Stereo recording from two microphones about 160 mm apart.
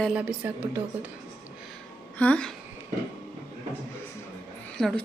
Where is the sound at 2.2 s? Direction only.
5° left (ahead or behind).